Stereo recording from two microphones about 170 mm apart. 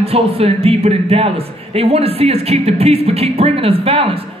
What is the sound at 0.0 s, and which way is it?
A man's voice, 35° right (ahead or behind).